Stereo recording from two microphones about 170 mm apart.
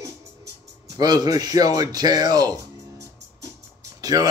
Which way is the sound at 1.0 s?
20° right (ahead or behind).